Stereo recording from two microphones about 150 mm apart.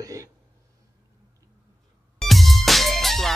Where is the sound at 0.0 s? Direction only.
20° right (ahead or behind).